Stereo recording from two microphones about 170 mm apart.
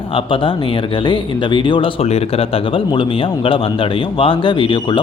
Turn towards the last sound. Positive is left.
turn(degrees=30)  # may be behind; listen again after turning